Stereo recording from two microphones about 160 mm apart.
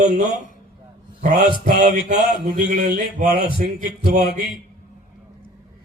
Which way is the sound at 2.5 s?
60° right (ahead or behind).